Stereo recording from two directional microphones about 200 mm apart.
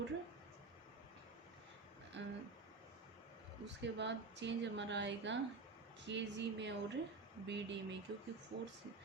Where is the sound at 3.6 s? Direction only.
60° right (ahead or behind).